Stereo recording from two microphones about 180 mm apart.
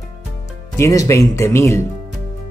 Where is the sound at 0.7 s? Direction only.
20° left (ahead or behind).